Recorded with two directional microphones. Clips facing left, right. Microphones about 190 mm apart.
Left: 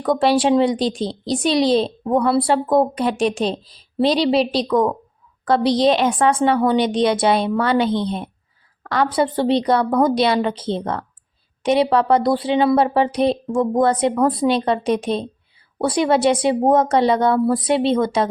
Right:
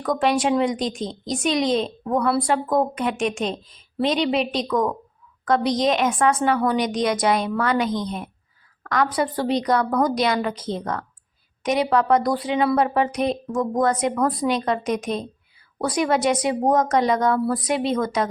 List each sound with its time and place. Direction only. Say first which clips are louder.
0.0 s a woman's voice: left 4 dB; 30° left (ahead or behind)